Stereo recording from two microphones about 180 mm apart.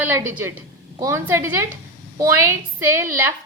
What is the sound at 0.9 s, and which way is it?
Speech, 15° right (ahead or behind).